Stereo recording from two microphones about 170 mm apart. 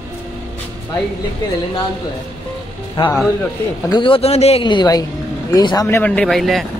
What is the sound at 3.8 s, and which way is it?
A man's voice, 30° left (ahead or behind).